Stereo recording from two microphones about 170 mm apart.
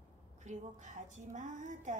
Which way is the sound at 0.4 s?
45° right (ahead or behind).